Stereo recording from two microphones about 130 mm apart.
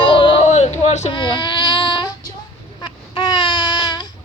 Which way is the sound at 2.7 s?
35° left (ahead or behind).